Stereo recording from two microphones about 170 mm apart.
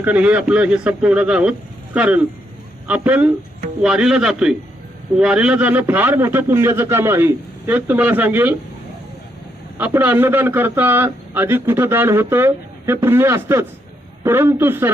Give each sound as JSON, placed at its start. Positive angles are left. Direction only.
{"t": 0.0, "sound": "a man's voice", "side_deg": -10}
{"t": 9.7, "sound": "a man's voice", "side_deg": -10}